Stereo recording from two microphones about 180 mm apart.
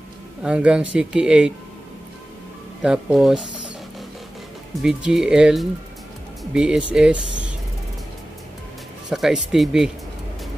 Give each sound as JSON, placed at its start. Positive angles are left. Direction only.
{"t": 0.4, "sound": "speech", "side_deg": -5}
{"t": 2.8, "sound": "speech", "side_deg": -5}
{"t": 4.8, "sound": "speech", "side_deg": -5}
{"t": 7.2, "sound": "speech", "side_deg": -85}
{"t": 9.1, "sound": "speech", "side_deg": 0}